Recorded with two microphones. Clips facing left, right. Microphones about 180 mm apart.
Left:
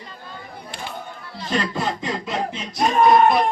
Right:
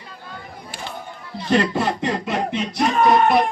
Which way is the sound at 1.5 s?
60° right (ahead or behind).